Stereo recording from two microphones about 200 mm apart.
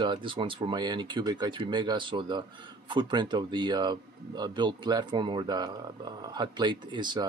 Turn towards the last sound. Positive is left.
turn(degrees=-20)  # may be behind; listen again after turning